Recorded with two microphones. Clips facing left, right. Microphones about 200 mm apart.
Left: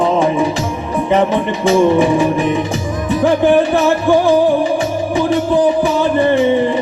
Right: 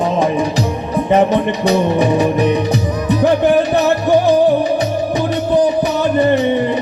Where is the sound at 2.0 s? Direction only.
40° right (ahead or behind).